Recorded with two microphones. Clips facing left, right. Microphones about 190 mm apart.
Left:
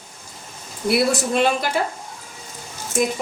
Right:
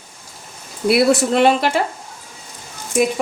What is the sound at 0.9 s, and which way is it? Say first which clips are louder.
Speech: right 4 dB; 65° right (ahead or behind).